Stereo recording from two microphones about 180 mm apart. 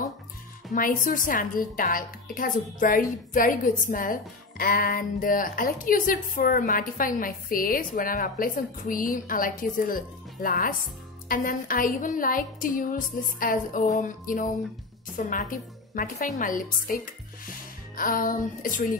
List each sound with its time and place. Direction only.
0.7 s a woman's voice: 50° left (ahead or behind)